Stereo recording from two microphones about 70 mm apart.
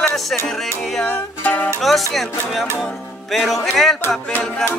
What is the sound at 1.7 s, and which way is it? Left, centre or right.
Accordion, centre.